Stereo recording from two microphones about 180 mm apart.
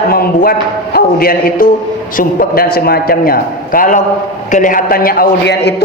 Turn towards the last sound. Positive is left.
turn(degrees=65)  # may be behind; listen again after turning